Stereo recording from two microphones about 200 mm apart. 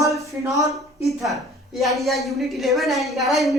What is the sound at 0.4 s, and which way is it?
Speech, 15° right (ahead or behind).